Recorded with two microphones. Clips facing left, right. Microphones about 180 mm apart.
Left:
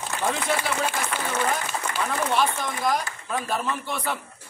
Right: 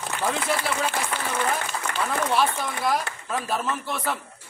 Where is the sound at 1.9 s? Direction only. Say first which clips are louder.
Right 1 dB; 65° right (ahead or behind).